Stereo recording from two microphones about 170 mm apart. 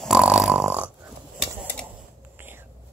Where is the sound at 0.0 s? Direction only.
5° right (ahead or behind).